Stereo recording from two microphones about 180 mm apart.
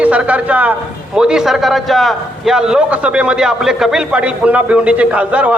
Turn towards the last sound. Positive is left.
turn(degrees=-5)  # may be behind; listen again after turning